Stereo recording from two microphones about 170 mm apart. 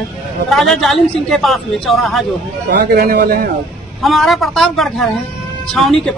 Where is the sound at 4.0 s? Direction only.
Centre (ahead or behind).